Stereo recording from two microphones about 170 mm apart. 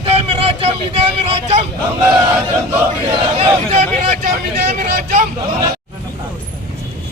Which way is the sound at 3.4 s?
40° right (ahead or behind).